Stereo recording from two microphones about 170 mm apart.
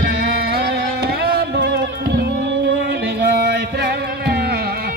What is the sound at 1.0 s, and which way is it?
Music, 65° right (ahead or behind).